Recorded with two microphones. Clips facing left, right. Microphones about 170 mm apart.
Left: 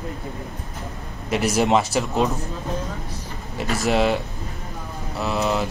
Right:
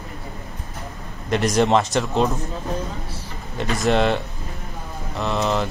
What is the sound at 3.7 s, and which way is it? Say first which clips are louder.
Speech: right 1 dB; 5° left (ahead or behind).